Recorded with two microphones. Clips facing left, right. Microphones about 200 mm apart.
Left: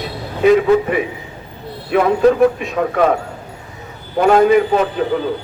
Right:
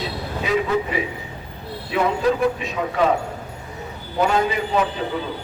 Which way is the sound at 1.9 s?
55° left (ahead or behind).